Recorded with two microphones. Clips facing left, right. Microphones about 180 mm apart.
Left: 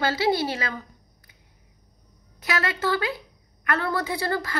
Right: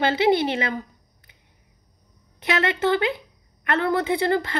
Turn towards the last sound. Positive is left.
turn(degrees=-20)  # may be behind; listen again after turning